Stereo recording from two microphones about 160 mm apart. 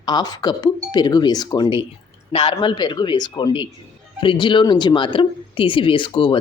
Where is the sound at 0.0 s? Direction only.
25° left (ahead or behind).